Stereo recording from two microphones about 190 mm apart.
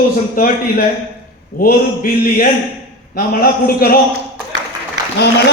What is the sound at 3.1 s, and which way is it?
Speech, 50° left (ahead or behind).